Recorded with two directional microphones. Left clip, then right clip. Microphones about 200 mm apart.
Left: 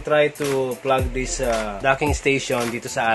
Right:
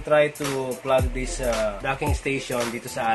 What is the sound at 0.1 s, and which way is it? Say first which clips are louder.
Speech: left 2 dB; 45° left (ahead or behind).